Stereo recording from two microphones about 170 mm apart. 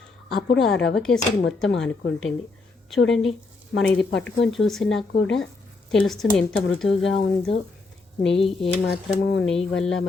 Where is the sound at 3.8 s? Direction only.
10° left (ahead or behind).